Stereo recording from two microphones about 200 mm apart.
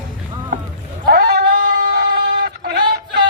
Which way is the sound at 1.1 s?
55° right (ahead or behind).